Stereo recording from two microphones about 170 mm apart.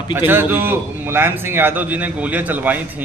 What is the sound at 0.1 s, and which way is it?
A man's voice, 10° right (ahead or behind).